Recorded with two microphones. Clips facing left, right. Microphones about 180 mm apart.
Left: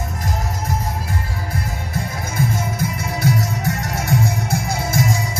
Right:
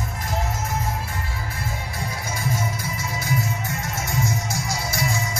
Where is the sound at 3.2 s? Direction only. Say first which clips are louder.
Left 7 dB; 70° left (ahead or behind).